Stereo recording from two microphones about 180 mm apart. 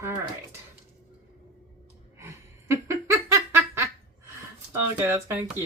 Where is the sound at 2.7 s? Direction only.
15° right (ahead or behind).